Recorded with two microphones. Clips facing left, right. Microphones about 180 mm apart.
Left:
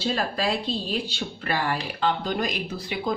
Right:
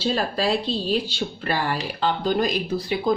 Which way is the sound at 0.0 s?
30° right (ahead or behind).